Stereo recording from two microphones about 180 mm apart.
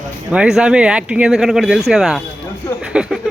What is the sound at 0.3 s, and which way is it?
Speech, 5° right (ahead or behind).